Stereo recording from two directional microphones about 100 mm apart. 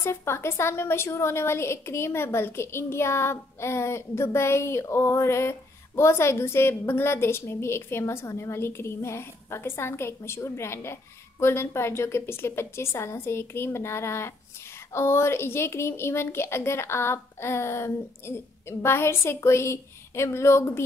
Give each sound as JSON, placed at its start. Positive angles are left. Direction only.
{"t": 0.0, "sound": "a woman's voice", "side_deg": 25}